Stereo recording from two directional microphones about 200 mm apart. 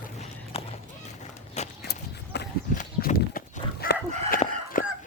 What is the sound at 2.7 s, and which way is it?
Livestock, 45° left (ahead or behind).